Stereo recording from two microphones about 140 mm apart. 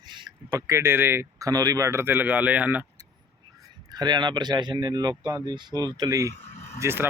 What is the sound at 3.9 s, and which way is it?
A man's voice, 30° right (ahead or behind).